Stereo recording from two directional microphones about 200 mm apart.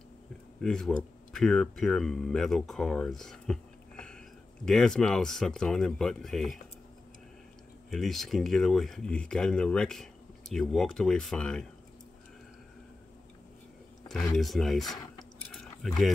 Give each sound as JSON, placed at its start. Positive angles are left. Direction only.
{"t": 0.6, "sound": "speech", "side_deg": 5}
{"t": 7.9, "sound": "speech", "side_deg": 0}
{"t": 14.3, "sound": "drip", "side_deg": 0}